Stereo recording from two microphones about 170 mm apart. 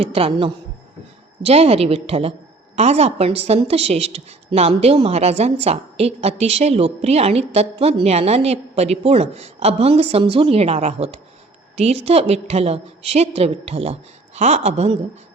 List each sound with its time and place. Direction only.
0.0 s a woman's voice: 35° right (ahead or behind)